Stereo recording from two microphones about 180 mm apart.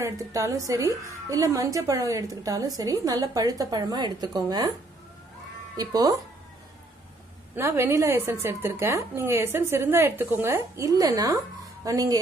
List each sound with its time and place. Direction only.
0.0 s a woman's voice: 15° right (ahead or behind)
5.8 s a woman's voice: 20° right (ahead or behind)
7.5 s a woman's voice: 15° right (ahead or behind)